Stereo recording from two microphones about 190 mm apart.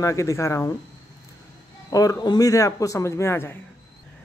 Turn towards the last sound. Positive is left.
turn(degrees=15)  # may be behind; listen again after turning